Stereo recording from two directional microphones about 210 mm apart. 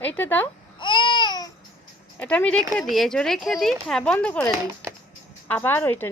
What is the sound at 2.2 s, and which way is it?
A woman's voice, 5° left (ahead or behind).